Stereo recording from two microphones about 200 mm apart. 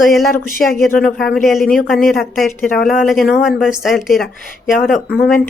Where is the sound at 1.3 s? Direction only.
Centre (ahead or behind).